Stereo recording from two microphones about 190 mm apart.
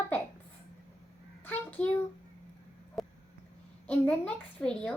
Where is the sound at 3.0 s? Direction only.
Centre (ahead or behind).